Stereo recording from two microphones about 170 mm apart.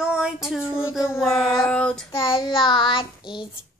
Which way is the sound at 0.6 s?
15° left (ahead or behind).